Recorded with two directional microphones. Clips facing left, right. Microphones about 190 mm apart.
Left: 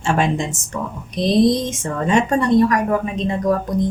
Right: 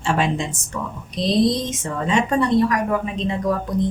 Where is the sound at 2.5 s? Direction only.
45° left (ahead or behind).